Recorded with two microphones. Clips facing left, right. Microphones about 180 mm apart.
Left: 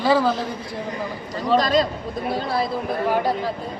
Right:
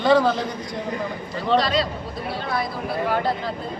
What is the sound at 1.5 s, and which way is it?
Speech, 45° left (ahead or behind).